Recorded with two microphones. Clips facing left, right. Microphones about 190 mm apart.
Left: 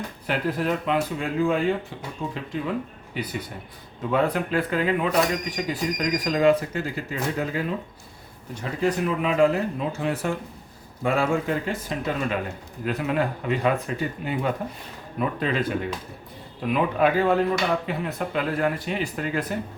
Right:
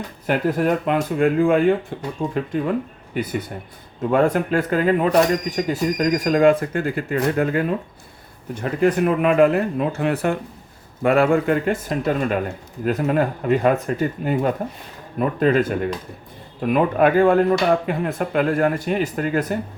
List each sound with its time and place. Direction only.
0.3 s speech: 50° right (ahead or behind)
16.6 s speech: 50° right (ahead or behind)